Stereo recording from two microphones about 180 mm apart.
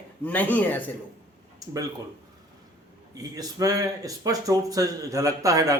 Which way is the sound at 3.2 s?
20° right (ahead or behind).